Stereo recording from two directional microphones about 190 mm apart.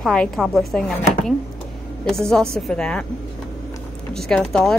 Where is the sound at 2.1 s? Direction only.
5° left (ahead or behind).